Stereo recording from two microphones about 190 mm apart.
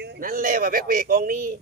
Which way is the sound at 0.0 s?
55° right (ahead or behind).